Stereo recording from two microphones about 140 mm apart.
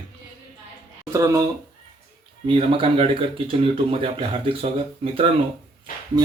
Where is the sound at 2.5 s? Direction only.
40° right (ahead or behind).